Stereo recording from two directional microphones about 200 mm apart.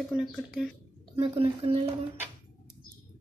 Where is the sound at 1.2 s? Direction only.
25° right (ahead or behind).